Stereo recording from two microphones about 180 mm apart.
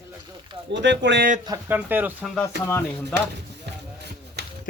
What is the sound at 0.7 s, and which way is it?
Speech, 80° right.